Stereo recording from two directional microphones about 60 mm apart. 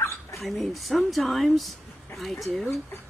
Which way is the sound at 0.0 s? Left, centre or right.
Left.